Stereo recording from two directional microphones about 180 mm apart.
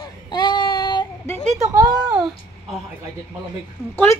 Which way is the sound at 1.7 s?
20° right (ahead or behind).